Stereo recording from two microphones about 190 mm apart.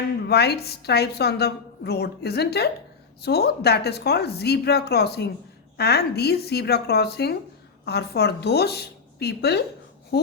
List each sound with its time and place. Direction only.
0.3 s a woman's voice: 60° left (ahead or behind)